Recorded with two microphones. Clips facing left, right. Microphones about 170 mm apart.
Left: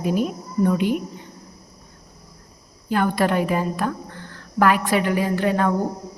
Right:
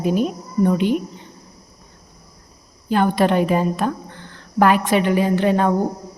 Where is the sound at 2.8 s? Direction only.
25° right (ahead or behind).